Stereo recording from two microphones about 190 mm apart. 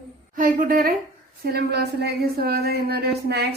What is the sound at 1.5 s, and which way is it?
A woman's voice, 60° right (ahead or behind).